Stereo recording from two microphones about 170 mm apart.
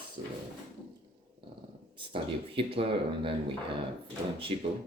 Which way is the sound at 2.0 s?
30° right (ahead or behind).